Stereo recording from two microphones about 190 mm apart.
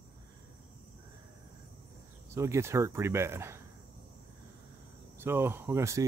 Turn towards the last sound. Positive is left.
turn(degrees=-15)  # may be behind; listen again after turning